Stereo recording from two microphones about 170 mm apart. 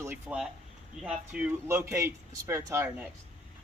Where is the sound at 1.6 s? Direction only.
15° right (ahead or behind).